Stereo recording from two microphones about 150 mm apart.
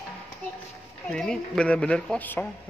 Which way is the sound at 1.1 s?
5° left (ahead or behind).